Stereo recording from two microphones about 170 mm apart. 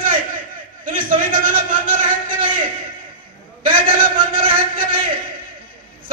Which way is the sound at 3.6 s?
30° right (ahead or behind).